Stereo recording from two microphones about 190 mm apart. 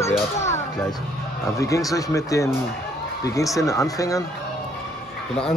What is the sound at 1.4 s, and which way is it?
A man's voice, 15° left (ahead or behind).